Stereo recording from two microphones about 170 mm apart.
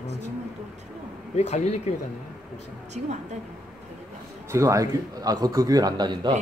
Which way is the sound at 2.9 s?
40° right (ahead or behind).